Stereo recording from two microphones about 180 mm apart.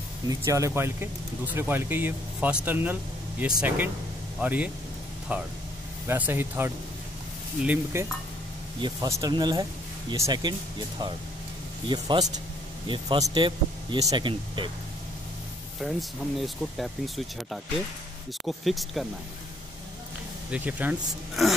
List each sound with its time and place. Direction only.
0.3 s speech: 15° right (ahead or behind)
8.8 s speech: 20° right (ahead or behind)
15.8 s speech: centre (ahead or behind)
20.5 s speech: 10° right (ahead or behind)